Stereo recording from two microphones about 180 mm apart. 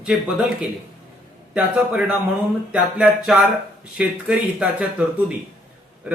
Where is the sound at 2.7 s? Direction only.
5° right (ahead or behind).